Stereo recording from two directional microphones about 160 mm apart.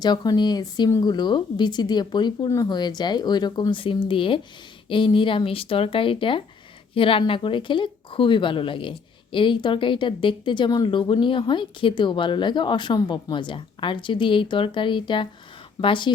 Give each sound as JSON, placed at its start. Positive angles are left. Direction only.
{"t": 0.0, "sound": "speech", "side_deg": 25}